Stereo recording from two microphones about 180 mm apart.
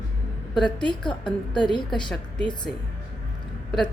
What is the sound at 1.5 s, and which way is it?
Speech, 25° left (ahead or behind).